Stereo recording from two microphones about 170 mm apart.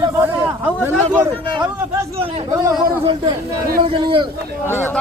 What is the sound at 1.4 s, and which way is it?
Speech, 25° right (ahead or behind).